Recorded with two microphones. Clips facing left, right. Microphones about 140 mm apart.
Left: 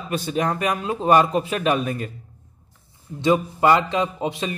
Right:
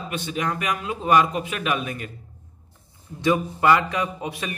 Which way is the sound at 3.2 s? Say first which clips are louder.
Left 2 dB; 25° left (ahead or behind).